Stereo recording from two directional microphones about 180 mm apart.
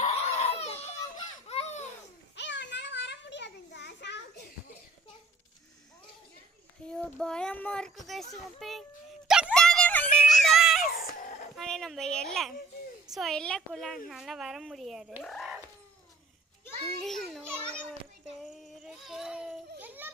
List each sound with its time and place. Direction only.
0.0 s children playing: 35° left (ahead or behind)
2.3 s a sound: 80° left
6.8 s a child's voice: 5° left (ahead or behind)
9.2 s a sound: 5° right (ahead or behind)
10.8 s music: 45° left (ahead or behind)
11.5 s a child's voice: centre (ahead or behind)
15.2 s a sound: centre (ahead or behind)
17.0 s a child's voice: centre (ahead or behind)
18.3 s child singing: centre (ahead or behind)
19.8 s children playing: 10° right (ahead or behind)